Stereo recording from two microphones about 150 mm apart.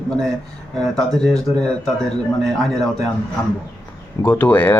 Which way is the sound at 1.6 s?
5° left (ahead or behind).